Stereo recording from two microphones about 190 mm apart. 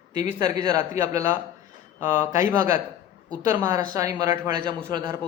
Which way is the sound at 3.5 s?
20° right (ahead or behind).